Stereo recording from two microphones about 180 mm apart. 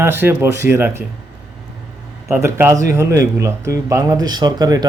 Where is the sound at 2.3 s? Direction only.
15° right (ahead or behind).